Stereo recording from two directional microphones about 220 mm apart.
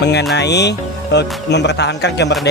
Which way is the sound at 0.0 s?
50° left (ahead or behind).